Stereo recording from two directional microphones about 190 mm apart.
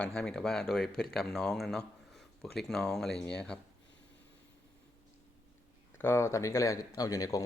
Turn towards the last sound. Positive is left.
turn(degrees=20)  # may be behind; listen again after turning